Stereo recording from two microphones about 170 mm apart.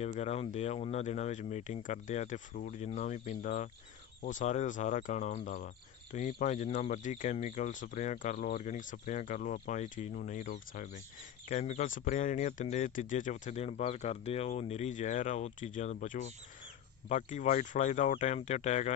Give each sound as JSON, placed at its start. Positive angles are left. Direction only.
{"t": 0.0, "sound": "speech", "side_deg": 40}